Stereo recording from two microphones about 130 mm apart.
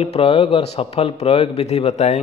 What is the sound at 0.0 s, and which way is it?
A man's voice, 50° left (ahead or behind).